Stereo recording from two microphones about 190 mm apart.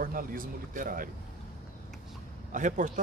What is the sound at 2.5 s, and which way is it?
Speech, 40° right (ahead or behind).